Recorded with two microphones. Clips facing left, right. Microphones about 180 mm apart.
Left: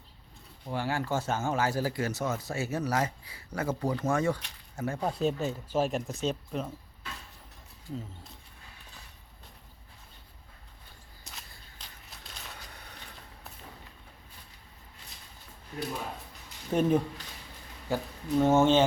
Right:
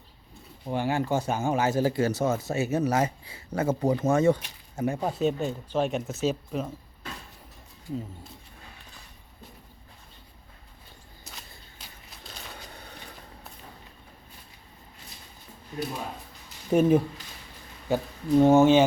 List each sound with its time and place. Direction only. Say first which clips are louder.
0.6 s speech: right 5 dB; 20° right (ahead or behind)
5.0 s speech: right 1 dB; centre (ahead or behind)
7.9 s speech: right 5 dB; centre (ahead or behind)
11.2 s a sound: right 2 dB; centre (ahead or behind)
12.7 s vehicle: right 4 dB; 30° right (ahead or behind)
16.7 s speech: right 5 dB; 10° right (ahead or behind)